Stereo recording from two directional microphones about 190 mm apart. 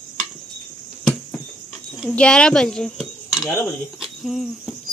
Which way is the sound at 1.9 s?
5° left (ahead or behind).